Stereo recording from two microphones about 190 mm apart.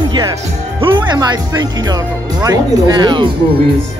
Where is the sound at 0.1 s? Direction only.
25° right (ahead or behind).